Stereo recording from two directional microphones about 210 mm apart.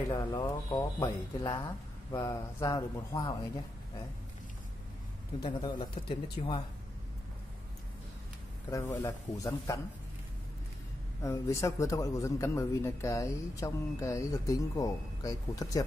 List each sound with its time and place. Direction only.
0.1 s a man's voice: 15° left (ahead or behind)
5.4 s speech: 20° left (ahead or behind)
6.4 s speech: 35° left (ahead or behind)
8.6 s a man's voice: 15° left (ahead or behind)
11.2 s a man's voice: 15° left (ahead or behind)